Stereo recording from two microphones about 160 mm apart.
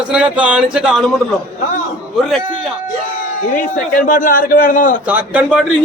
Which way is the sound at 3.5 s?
55° left (ahead or behind).